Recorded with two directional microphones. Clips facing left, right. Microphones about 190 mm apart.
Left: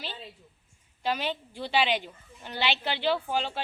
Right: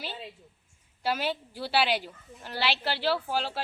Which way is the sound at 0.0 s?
10° right (ahead or behind).